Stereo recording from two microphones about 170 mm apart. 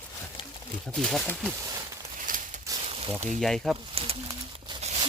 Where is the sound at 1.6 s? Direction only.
20° right (ahead or behind).